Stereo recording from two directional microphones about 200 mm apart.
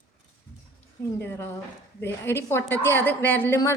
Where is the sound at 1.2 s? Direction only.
10° left (ahead or behind).